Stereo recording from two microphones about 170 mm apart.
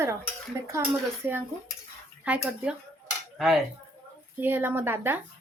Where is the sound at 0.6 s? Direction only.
15° right (ahead or behind).